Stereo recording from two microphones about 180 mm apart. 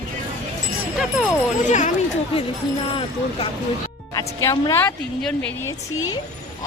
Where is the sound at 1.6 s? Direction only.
40° left (ahead or behind).